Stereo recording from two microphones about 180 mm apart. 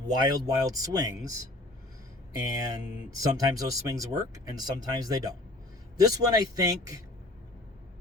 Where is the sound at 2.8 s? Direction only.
20° right (ahead or behind).